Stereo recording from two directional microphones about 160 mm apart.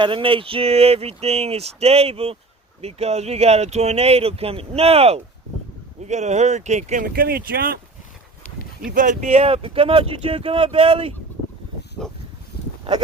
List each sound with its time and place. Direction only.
0.0 s speech: 35° right (ahead or behind); by 7.1 s 50° right (ahead or behind)
7.1 s speech: 70° right (ahead or behind)
9.0 s speech: 50° right (ahead or behind)
12.0 s a sound: 5° left (ahead or behind)